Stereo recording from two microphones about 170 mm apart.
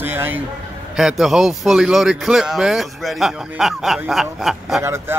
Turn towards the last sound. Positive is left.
turn(degrees=-15)  # may be behind; listen again after turning